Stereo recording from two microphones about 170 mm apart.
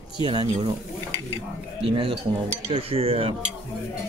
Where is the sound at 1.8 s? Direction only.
30° right (ahead or behind).